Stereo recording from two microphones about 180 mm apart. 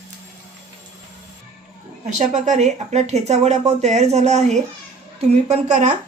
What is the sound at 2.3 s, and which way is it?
A woman's voice, 40° right (ahead or behind).